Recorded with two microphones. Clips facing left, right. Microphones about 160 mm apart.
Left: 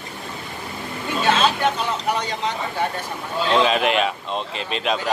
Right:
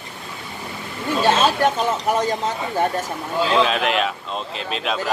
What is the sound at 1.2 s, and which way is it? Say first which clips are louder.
Speech: right 2 dB; 40° right (ahead or behind).